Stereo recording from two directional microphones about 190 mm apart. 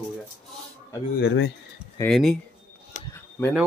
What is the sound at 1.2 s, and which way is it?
Speech, 65° left (ahead or behind).